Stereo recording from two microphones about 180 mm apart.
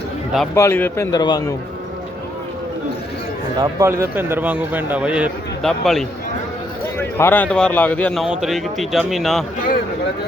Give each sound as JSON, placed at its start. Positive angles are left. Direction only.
{"t": 0.5, "sound": "a man's voice", "side_deg": 15}
{"t": 3.6, "sound": "speech", "side_deg": -15}
{"t": 7.2, "sound": "a man's voice", "side_deg": 10}